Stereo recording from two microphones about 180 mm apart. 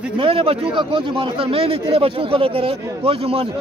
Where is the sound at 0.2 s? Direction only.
30° right (ahead or behind).